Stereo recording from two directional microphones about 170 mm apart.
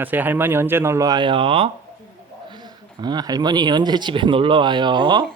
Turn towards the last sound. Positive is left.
turn(degrees=-25)  # may be behind; listen again after turning